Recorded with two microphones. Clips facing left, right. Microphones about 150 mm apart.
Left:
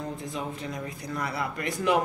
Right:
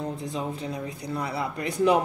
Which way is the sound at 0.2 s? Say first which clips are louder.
Right 3 dB; 35° right (ahead or behind).